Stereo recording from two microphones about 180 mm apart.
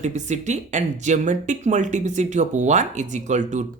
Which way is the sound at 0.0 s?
40° right (ahead or behind).